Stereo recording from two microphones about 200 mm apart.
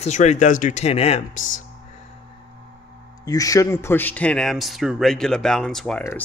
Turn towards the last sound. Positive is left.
turn(degrees=5)  # may be behind; listen again after turning